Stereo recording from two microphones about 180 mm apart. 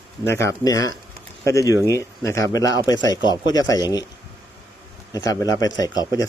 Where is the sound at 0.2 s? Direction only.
15° left (ahead or behind).